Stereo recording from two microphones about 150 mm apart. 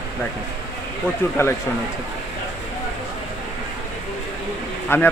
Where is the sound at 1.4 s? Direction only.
15° left (ahead or behind).